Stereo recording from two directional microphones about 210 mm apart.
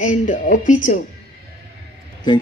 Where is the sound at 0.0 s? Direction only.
35° left (ahead or behind).